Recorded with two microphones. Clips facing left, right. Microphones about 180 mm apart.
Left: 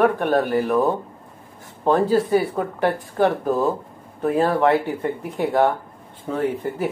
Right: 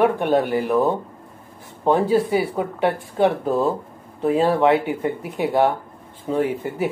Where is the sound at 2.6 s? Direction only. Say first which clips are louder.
Even; 25° right (ahead or behind).